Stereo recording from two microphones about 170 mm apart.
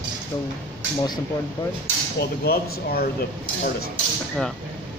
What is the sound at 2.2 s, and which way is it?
Speech, 65° left (ahead or behind).